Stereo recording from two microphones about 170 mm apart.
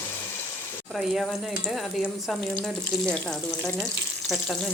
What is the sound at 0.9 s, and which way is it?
Speech, centre (ahead or behind).